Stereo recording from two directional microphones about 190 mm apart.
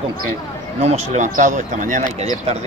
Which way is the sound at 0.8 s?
40° right (ahead or behind).